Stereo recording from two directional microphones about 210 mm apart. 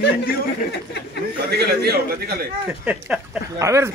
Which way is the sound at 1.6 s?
50° right (ahead or behind).